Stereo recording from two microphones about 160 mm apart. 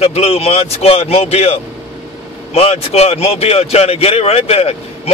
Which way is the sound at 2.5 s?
40° left (ahead or behind).